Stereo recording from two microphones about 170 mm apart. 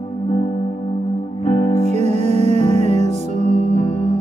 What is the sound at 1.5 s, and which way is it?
Music, 30° left (ahead or behind).